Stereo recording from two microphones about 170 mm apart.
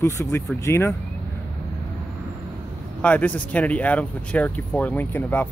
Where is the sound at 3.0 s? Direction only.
10° left (ahead or behind).